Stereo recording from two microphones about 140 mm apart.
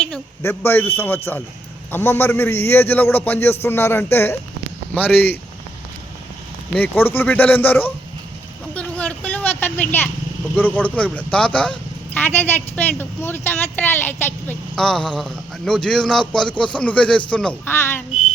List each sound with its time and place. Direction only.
0.4 s speech: 15° left (ahead or behind)
6.7 s speech: 15° left (ahead or behind)
8.7 s vehicle: 10° left (ahead or behind)
10.5 s speech: 10° left (ahead or behind)
14.8 s speech: 5° left (ahead or behind)